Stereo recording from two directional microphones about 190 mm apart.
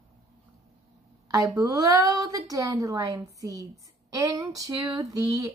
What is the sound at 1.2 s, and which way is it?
A woman's voice, 20° right (ahead or behind).